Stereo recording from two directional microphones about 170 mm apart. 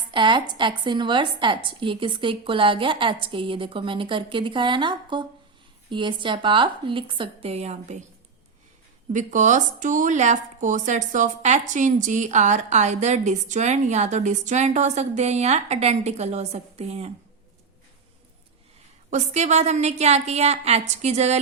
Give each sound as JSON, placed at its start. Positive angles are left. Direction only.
{"t": 0.1, "sound": "a woman's voice", "side_deg": -30}
{"t": 9.1, "sound": "speech", "side_deg": -50}
{"t": 19.1, "sound": "a woman's voice", "side_deg": -45}